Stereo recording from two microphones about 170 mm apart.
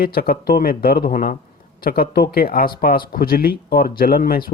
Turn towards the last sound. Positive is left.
turn(degrees=60)  # may be behind; listen again after turning